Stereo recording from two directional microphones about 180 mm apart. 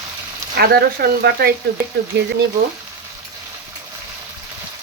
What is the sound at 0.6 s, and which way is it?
Speech, 60° right (ahead or behind).